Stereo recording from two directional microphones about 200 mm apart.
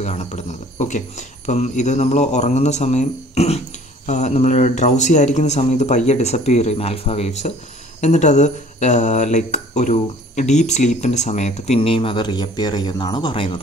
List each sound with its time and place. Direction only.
0.0 s speech: 35° left (ahead or behind)